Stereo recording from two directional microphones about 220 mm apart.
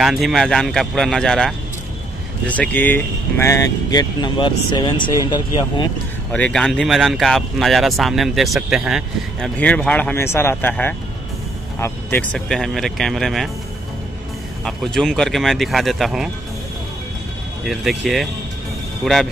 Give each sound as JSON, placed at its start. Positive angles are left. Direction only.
{"t": 0.0, "sound": "speech", "side_deg": 0}
{"t": 6.3, "sound": "speech", "side_deg": 5}
{"t": 14.6, "sound": "speech", "side_deg": 0}
{"t": 17.6, "sound": "speech", "side_deg": 0}